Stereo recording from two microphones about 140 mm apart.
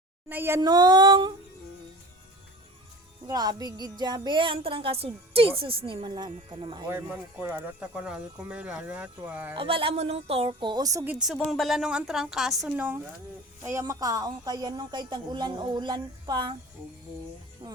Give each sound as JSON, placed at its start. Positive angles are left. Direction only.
{"t": 0.3, "sound": "speech", "side_deg": -15}
{"t": 0.6, "sound": "music", "side_deg": -30}
{"t": 3.2, "sound": "speech", "side_deg": -25}
{"t": 6.9, "sound": "speech", "side_deg": -15}
{"t": 9.6, "sound": "speech", "side_deg": -40}
{"t": 11.0, "sound": "speech", "side_deg": -10}
{"t": 11.3, "sound": "a woman's voice", "side_deg": 0}